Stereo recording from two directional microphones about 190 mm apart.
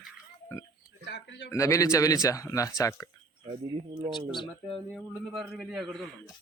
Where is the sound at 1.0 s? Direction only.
70° left (ahead or behind).